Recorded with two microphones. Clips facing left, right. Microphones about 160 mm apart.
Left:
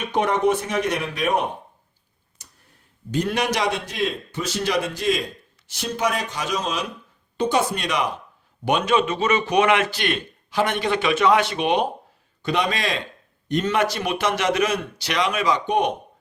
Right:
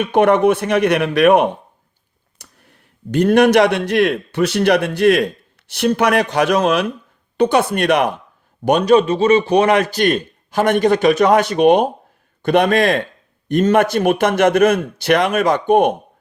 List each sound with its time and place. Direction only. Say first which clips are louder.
0.0 s speech: right 8 dB; 60° right (ahead or behind)
3.1 s a man's voice: right 11 dB; 55° right (ahead or behind)
8.6 s a man's voice: right 8 dB; 40° right (ahead or behind)
12.4 s a man's voice: right 10 dB; 55° right (ahead or behind)